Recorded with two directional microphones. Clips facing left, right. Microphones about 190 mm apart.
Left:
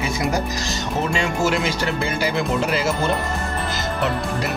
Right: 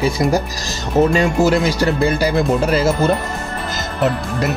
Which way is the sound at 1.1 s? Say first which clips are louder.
Right 6 dB; 40° right (ahead or behind).